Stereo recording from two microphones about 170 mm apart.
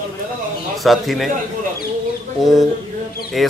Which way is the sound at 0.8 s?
Centre (ahead or behind).